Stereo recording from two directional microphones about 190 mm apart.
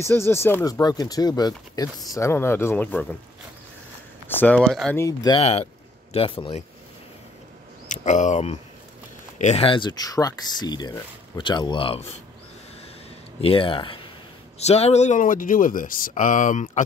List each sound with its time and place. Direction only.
0.0 s speech: 15° left (ahead or behind)
4.3 s speech: 10° left (ahead or behind)
4.9 s speech: 20° left (ahead or behind)
5.4 s speech: 35° left (ahead or behind)
7.9 s speech: 40° left (ahead or behind)
13.4 s speech: 30° left (ahead or behind)